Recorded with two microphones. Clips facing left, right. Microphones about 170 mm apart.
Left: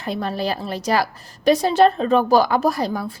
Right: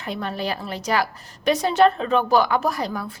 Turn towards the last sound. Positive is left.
turn(degrees=35)  # may be behind; listen again after turning